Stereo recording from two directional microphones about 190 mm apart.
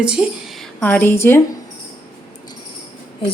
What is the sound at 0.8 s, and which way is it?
Speech, 10° left (ahead or behind).